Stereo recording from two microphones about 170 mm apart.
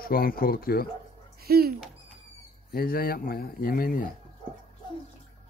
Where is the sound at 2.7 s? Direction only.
60° left (ahead or behind).